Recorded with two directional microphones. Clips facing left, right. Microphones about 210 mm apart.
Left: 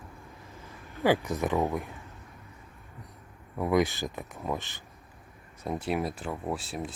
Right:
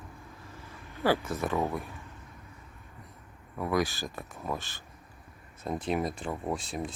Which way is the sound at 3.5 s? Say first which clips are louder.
Left 4 dB; 20° left (ahead or behind).